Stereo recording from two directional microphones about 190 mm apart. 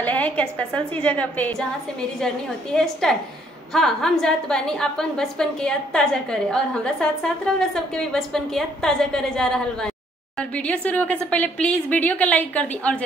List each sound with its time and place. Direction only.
0.0 s a woman's voice: 10° left (ahead or behind)